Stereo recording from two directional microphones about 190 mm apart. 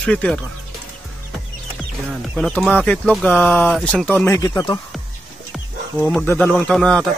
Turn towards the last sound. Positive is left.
turn(degrees=5)  # may be behind; listen again after turning